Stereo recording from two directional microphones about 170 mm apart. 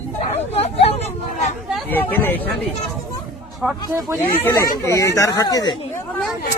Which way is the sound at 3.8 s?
20° right (ahead or behind).